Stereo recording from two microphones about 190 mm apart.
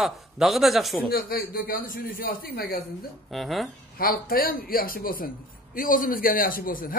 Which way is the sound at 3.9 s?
50° left (ahead or behind).